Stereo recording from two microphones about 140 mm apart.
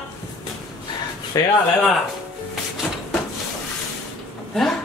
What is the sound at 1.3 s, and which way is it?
Speech, 25° left (ahead or behind).